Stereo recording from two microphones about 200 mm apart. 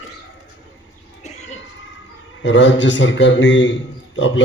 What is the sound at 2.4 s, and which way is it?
Speech, 65° left (ahead or behind).